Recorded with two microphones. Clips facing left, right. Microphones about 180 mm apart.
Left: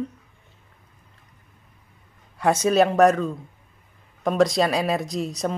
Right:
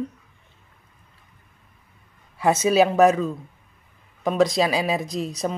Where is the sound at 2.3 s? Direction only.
5° right (ahead or behind).